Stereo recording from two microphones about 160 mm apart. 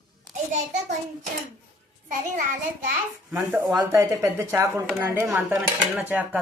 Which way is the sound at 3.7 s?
20° right (ahead or behind).